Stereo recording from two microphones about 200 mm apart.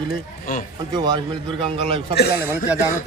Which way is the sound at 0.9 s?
20° right (ahead or behind).